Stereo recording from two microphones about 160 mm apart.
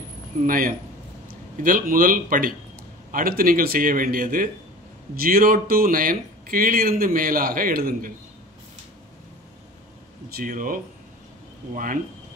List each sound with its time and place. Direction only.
0.4 s speech: 60° right (ahead or behind)
10.3 s speech: 60° right (ahead or behind)